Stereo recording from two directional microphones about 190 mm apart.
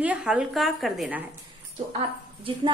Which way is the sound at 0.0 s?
5° right (ahead or behind).